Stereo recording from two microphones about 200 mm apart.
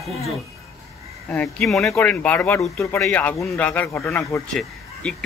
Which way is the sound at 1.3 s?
5° left (ahead or behind).